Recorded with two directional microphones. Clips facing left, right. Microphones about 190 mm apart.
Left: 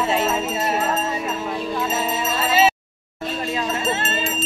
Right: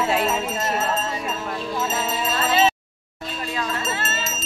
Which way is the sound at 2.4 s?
10° left (ahead or behind).